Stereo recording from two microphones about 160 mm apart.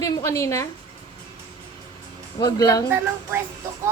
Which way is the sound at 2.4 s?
20° left (ahead or behind).